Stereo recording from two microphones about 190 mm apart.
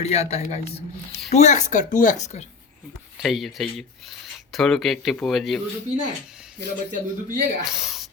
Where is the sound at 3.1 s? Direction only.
Centre (ahead or behind).